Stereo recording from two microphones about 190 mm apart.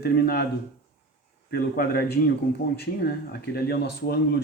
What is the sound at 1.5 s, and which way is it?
Speech, 55° left (ahead or behind).